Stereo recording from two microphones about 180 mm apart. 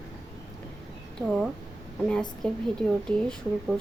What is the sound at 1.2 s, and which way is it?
A woman's voice, centre (ahead or behind).